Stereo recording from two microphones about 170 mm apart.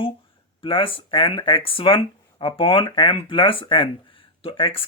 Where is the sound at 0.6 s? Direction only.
30° left (ahead or behind).